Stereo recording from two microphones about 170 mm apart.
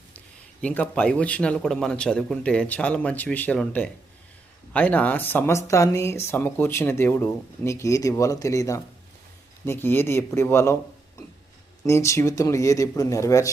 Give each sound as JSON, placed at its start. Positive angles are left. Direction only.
{"t": 0.6, "sound": "speech", "side_deg": 10}
{"t": 11.9, "sound": "speech", "side_deg": 15}